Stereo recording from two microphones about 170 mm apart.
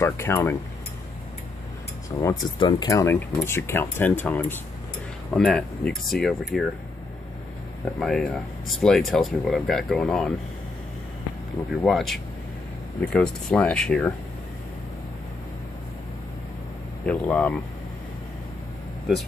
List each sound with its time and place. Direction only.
0.0 s speech: 15° left (ahead or behind)
2.0 s speech: 20° left (ahead or behind); by 6.6 s centre (ahead or behind)
8.0 s speech: 5° left (ahead or behind)
11.8 s speech: centre (ahead or behind)
17.0 s speech: 10° left (ahead or behind)